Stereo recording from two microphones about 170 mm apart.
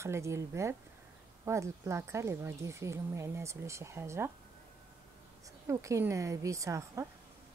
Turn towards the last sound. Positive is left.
turn(degrees=-20)  # may be behind; listen again after turning